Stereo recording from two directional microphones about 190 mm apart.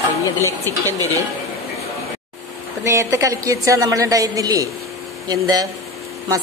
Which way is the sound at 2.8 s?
15° right (ahead or behind).